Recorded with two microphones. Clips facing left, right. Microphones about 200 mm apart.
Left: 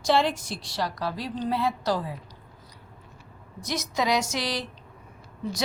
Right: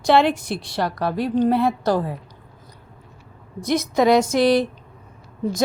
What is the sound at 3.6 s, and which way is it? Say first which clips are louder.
Speech: right 10 dB; 55° right (ahead or behind).